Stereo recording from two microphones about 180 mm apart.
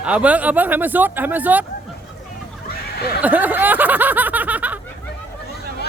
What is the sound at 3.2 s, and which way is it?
Snicker, 10° right (ahead or behind).